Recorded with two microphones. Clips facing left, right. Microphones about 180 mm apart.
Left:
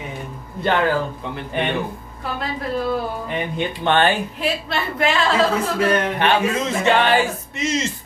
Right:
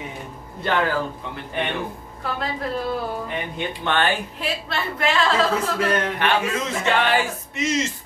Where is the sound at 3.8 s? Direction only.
25° left (ahead or behind).